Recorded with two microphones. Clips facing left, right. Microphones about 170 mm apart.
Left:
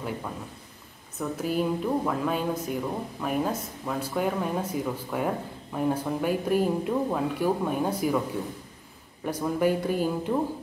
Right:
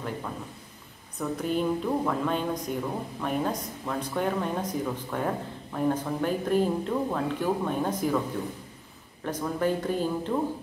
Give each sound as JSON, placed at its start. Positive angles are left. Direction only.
{"t": 1.2, "sound": "a woman's voice", "side_deg": 5}
{"t": 9.2, "sound": "a woman's voice", "side_deg": 10}